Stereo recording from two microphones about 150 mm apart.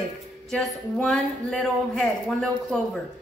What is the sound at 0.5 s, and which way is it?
A woman's voice, centre (ahead or behind).